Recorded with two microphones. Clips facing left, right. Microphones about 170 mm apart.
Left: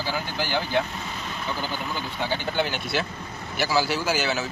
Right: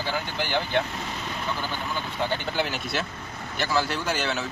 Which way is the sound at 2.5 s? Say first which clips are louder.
Left 2 dB; centre (ahead or behind).